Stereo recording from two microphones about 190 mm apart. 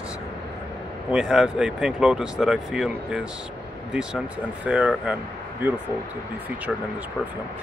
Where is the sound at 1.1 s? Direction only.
5° right (ahead or behind).